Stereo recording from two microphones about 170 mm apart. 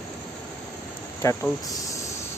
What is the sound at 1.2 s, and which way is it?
Speech, 15° left (ahead or behind).